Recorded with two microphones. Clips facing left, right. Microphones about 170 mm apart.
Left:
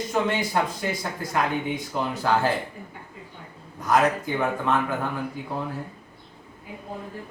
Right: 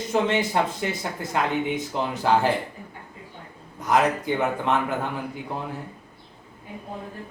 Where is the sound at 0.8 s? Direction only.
20° right (ahead or behind).